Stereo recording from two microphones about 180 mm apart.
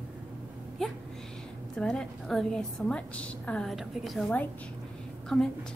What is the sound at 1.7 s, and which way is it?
A woman's voice, 5° left (ahead or behind).